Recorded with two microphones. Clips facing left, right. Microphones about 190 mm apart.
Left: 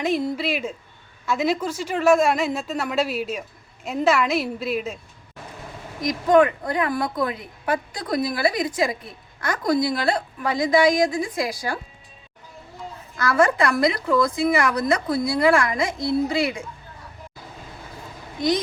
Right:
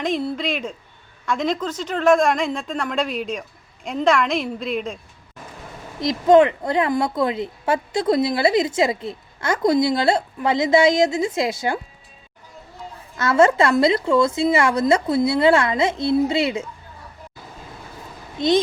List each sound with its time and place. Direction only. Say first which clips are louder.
0.0 s a woman's voice: even; 10° left (ahead or behind)
6.0 s a woman's voice: right 3 dB; 25° right (ahead or behind)
13.1 s a woman's voice: right 4 dB; 25° right (ahead or behind)
18.3 s a child's voice: right 4 dB; 25° right (ahead or behind)